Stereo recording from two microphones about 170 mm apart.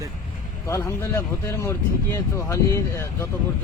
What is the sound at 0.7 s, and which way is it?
Speech, 15° left (ahead or behind).